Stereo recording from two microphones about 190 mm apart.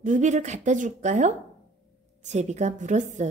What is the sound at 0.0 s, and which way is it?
Speech, 40° right (ahead or behind).